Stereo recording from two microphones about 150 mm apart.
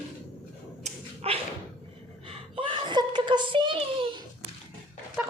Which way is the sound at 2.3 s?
40° right (ahead or behind).